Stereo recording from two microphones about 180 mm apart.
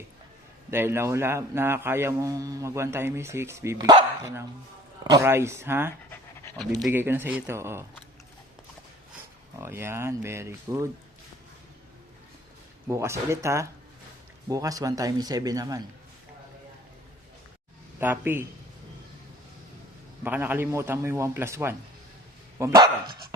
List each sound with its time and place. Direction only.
0.7 s a man's voice: 15° right (ahead or behind)
5.0 s a man's voice: 15° right (ahead or behind)
9.6 s a man's voice: 15° right (ahead or behind)
12.9 s a man's voice: 15° right (ahead or behind)
18.0 s a man's voice: 10° right (ahead or behind)
20.2 s a man's voice: 10° right (ahead or behind)